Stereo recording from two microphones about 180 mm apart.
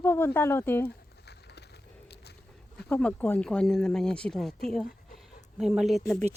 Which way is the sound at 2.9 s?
5° left (ahead or behind).